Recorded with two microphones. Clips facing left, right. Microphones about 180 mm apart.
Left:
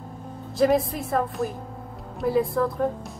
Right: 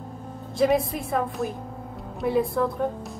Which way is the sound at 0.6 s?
Centre (ahead or behind).